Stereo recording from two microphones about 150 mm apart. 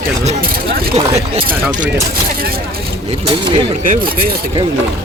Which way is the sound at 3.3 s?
35° right (ahead or behind).